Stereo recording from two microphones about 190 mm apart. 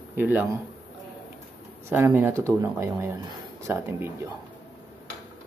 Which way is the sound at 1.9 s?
10° right (ahead or behind).